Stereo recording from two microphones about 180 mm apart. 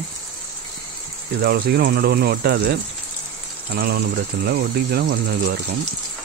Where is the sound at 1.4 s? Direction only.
60° right (ahead or behind).